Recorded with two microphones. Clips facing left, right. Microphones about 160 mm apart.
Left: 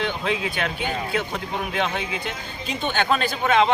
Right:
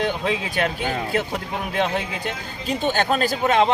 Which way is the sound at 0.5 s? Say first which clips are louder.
Right 3 dB; 45° right (ahead or behind).